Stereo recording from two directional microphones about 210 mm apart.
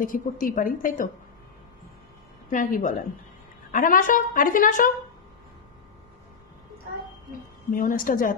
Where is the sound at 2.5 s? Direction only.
40° left (ahead or behind).